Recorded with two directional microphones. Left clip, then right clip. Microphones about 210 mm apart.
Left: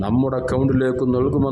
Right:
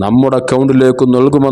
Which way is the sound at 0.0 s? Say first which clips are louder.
Right 10 dB; 35° right (ahead or behind).